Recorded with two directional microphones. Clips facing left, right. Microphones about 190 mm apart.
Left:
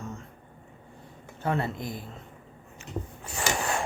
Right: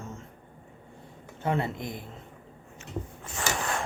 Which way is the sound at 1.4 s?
20° right (ahead or behind).